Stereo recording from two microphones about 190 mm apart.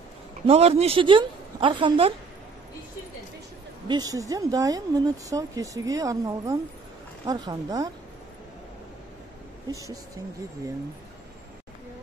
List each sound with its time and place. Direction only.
0.5 s a woman's voice: 35° right (ahead or behind)
3.8 s a woman's voice: 20° right (ahead or behind)
9.7 s speech: 15° right (ahead or behind)